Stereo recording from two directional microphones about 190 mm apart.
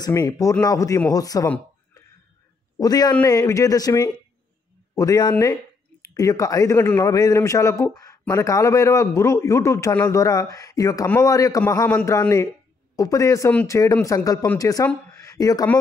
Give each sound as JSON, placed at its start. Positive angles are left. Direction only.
{"t": 0.0, "sound": "a man's voice", "side_deg": 15}
{"t": 2.8, "sound": "a man's voice", "side_deg": 20}
{"t": 15.1, "sound": "a sound", "side_deg": 20}